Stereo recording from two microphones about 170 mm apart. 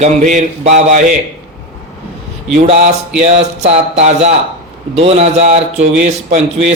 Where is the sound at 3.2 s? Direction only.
40° right (ahead or behind).